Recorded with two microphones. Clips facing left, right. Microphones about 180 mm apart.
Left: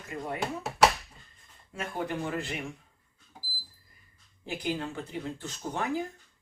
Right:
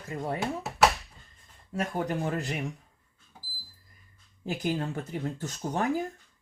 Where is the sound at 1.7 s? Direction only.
40° right (ahead or behind).